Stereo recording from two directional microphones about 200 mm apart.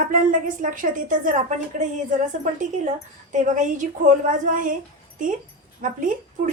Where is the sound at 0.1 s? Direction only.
40° right (ahead or behind).